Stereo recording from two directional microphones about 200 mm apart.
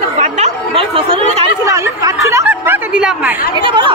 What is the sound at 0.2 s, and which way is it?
Chatter, 30° right (ahead or behind).